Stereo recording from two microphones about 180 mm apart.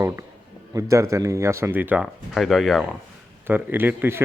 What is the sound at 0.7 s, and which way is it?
Speech, 15° right (ahead or behind).